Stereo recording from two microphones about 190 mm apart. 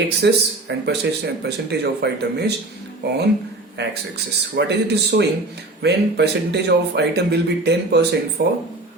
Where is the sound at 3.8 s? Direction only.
65° right (ahead or behind).